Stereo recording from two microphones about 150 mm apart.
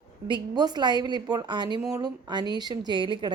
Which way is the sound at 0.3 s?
30° right (ahead or behind).